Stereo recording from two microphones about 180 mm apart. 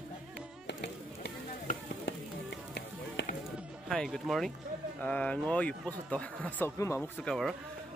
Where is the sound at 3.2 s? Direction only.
75° left (ahead or behind).